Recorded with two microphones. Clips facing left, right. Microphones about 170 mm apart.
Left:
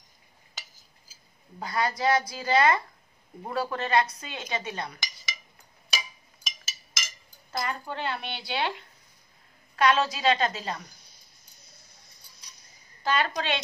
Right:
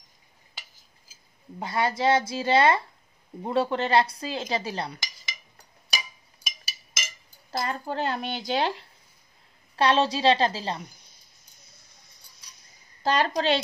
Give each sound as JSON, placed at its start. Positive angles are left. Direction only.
{"t": 1.6, "sound": "speech", "side_deg": -25}
{"t": 6.4, "sound": "a sound", "side_deg": -10}
{"t": 7.5, "sound": "speech", "side_deg": -35}
{"t": 9.8, "sound": "speech", "side_deg": -30}
{"t": 13.0, "sound": "speech", "side_deg": -40}